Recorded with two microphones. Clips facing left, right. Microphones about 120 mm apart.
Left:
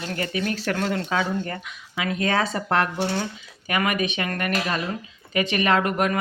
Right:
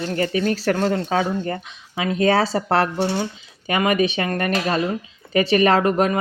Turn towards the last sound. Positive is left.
turn(degrees=-30)  # may be behind; listen again after turning